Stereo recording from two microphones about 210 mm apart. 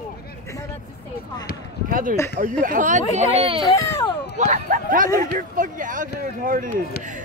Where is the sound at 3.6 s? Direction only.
15° left (ahead or behind).